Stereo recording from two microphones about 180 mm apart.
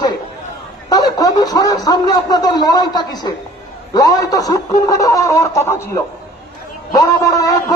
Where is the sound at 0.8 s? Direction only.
20° left (ahead or behind).